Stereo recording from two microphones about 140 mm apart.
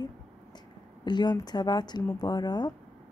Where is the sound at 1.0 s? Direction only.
30° left (ahead or behind).